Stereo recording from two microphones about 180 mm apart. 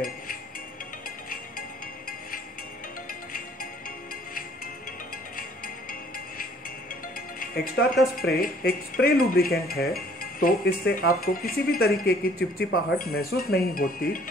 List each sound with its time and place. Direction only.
5.9 s music: 55° left (ahead or behind)
7.3 s speech: 55° left (ahead or behind)